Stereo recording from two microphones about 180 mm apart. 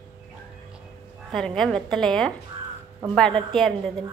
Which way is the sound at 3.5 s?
Centre (ahead or behind).